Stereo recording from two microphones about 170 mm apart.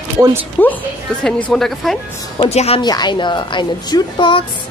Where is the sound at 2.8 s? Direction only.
25° left (ahead or behind).